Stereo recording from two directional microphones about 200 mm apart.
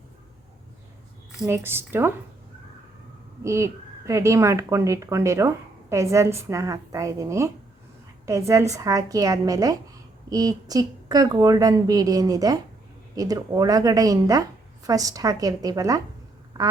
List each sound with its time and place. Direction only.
1.4 s a woman's voice: 10° right (ahead or behind)
3.4 s a woman's voice: 15° right (ahead or behind)